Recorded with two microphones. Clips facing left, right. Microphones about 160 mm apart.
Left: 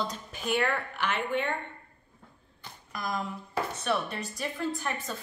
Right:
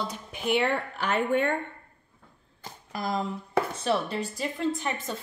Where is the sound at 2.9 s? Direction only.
30° right (ahead or behind).